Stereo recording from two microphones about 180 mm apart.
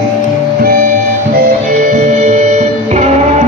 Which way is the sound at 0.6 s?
55° right (ahead or behind).